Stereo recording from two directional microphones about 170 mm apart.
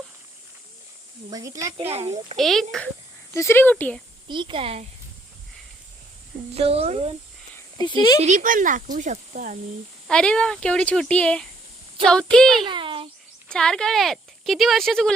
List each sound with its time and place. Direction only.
1.3 s speech: 20° right (ahead or behind)
1.9 s speech: 40° right (ahead or behind)
2.4 s speech: centre (ahead or behind)
3.3 s speech: 15° left (ahead or behind)
4.3 s speech: 30° right (ahead or behind)
6.5 s speech: 35° right (ahead or behind)
8.2 s speech: 45° right (ahead or behind)
10.1 s speech: 5° left (ahead or behind)
12.6 s a sound: 30° right (ahead or behind)
13.5 s speech: 5° left (ahead or behind)